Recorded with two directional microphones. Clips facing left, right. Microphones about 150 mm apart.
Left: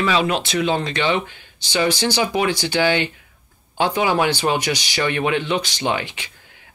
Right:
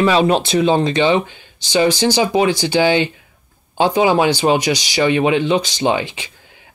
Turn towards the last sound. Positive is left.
turn(degrees=-20)  # may be behind; listen again after turning